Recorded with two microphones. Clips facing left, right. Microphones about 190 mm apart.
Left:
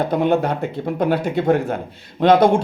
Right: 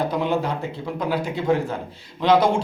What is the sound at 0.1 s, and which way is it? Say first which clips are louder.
A man's voice: left 5 dB; 55° left (ahead or behind).